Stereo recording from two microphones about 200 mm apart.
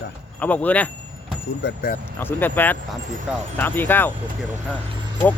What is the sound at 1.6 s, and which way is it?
Speech, 45° left (ahead or behind).